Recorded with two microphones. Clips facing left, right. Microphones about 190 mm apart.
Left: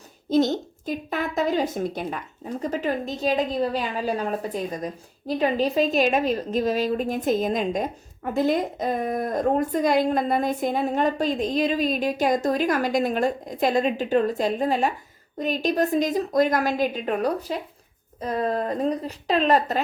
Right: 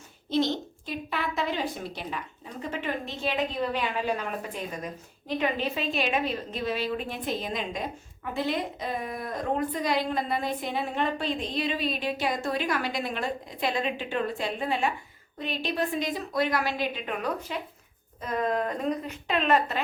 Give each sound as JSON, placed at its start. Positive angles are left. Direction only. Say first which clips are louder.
{"t": 0.3, "sound": "a woman's voice", "louder": "left 6 dB", "side_deg": 45}